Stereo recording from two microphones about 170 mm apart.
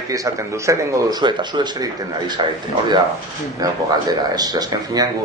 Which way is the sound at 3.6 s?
20° right (ahead or behind).